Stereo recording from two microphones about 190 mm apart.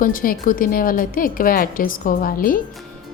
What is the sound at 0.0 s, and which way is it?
A woman's voice, 45° left (ahead or behind).